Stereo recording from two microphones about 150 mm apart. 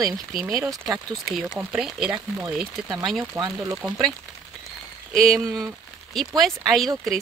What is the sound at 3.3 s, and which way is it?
Speech, 20° right (ahead or behind).